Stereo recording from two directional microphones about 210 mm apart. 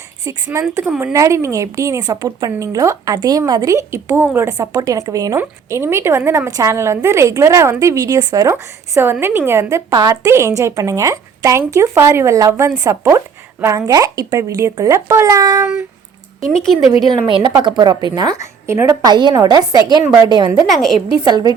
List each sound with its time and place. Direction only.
0.3 s speech: 15° right (ahead or behind)
17.0 s a woman's voice: 20° right (ahead or behind)